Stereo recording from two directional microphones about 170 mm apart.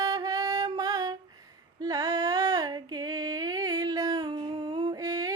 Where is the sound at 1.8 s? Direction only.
20° right (ahead or behind).